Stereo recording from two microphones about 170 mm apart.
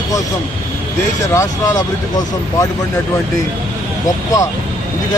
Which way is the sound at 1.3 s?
20° left (ahead or behind).